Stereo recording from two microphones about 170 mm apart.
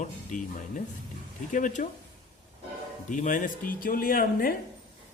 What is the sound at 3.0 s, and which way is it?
Speech, 50° left (ahead or behind).